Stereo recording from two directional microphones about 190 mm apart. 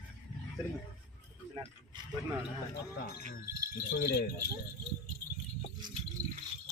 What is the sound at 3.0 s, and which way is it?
Wind chime, 55° left (ahead or behind).